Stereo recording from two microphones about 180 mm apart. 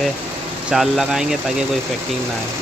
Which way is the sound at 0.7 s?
Centre (ahead or behind).